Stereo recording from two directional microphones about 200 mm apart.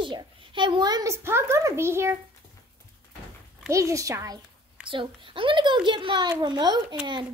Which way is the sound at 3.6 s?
15° right (ahead or behind).